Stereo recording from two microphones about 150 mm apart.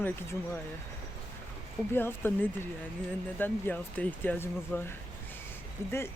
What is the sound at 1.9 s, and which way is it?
Speech, 15° left (ahead or behind).